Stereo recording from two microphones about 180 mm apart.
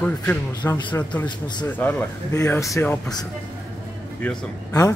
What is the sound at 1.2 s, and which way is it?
Speech, 25° left (ahead or behind).